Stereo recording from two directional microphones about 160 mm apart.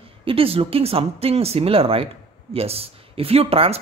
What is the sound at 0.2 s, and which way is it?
Speech, 35° right (ahead or behind).